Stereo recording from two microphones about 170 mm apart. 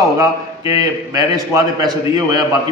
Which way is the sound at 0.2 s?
20° right (ahead or behind).